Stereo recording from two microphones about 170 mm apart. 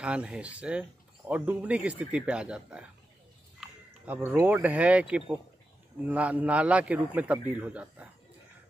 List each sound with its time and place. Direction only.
0.0 s speech: 5° right (ahead or behind)
3.6 s a sound: 10° right (ahead or behind)
4.4 s speech: 10° right (ahead or behind)